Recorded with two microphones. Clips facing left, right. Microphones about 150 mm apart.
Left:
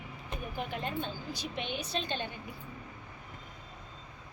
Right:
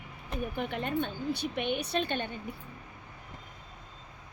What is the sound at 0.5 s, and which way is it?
A woman's voice, 60° right (ahead or behind).